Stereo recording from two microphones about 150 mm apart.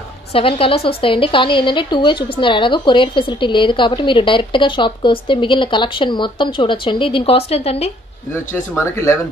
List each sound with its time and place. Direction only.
0.3 s a woman's voice: 40° left (ahead or behind)
8.5 s speech: 15° left (ahead or behind)